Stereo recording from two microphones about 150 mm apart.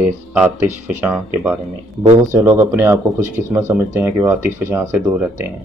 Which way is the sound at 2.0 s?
20° right (ahead or behind).